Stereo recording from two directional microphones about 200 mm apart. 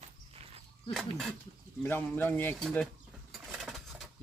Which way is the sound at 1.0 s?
Centre (ahead or behind).